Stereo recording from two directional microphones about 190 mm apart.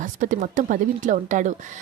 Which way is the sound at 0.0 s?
45° right (ahead or behind).